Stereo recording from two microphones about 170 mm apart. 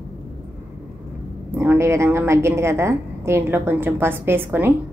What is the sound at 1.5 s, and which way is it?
A woman's voice, 15° right (ahead or behind).